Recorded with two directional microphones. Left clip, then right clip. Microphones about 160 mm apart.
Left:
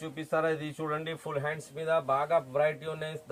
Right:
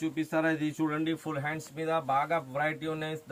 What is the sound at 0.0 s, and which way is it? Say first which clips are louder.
Speech: right 1 dB; 20° left (ahead or behind).